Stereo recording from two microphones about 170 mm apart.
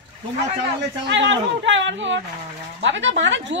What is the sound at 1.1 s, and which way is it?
A woman's voice, 90° right.